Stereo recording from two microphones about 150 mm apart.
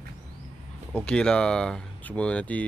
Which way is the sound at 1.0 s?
5° left (ahead or behind).